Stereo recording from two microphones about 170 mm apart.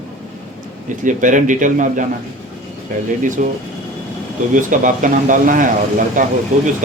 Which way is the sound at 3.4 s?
50° right (ahead or behind).